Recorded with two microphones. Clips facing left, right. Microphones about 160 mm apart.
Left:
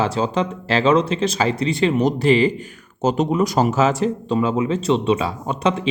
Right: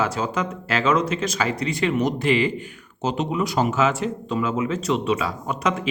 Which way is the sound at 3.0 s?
45° left (ahead or behind).